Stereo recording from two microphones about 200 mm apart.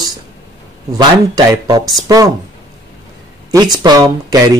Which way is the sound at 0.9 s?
20° right (ahead or behind).